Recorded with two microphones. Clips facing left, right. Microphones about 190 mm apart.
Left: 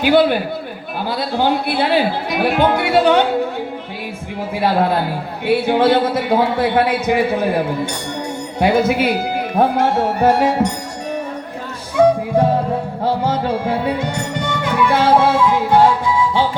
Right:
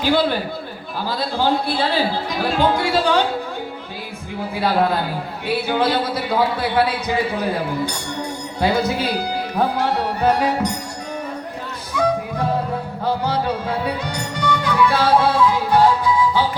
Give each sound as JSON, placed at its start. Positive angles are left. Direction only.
{"t": 0.0, "sound": "a man's voice", "side_deg": 15}
{"t": 4.5, "sound": "a man's voice", "side_deg": 25}
{"t": 12.0, "sound": "music", "side_deg": 25}